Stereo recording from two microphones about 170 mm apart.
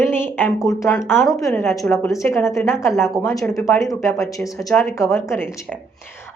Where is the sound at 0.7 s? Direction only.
20° left (ahead or behind).